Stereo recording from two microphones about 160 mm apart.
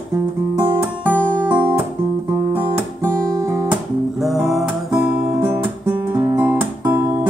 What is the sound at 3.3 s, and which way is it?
Guitar, 20° right (ahead or behind).